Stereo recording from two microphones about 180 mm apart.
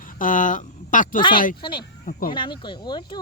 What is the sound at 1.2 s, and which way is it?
Speech, 25° left (ahead or behind).